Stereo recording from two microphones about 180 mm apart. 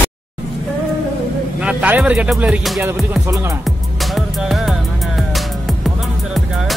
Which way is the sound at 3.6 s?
Centre (ahead or behind).